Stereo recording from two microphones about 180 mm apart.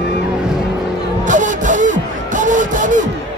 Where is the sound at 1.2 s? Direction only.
45° right (ahead or behind).